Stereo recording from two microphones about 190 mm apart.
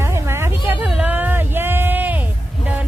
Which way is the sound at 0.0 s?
15° right (ahead or behind).